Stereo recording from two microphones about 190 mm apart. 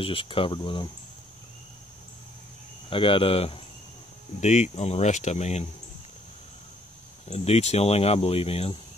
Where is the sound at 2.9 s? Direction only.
30° left (ahead or behind).